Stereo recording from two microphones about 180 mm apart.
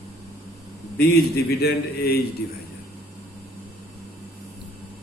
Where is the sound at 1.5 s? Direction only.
60° left (ahead or behind).